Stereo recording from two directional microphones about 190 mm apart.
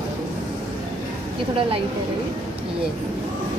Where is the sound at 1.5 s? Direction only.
30° right (ahead or behind).